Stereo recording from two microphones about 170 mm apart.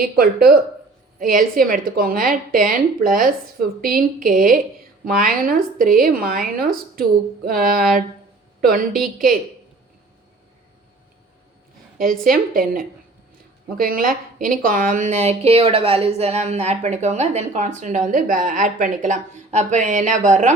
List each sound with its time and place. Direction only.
0.0 s a woman's voice: 60° right (ahead or behind)
8.9 s a woman's voice: centre (ahead or behind)
12.0 s a woman's voice: 55° right (ahead or behind)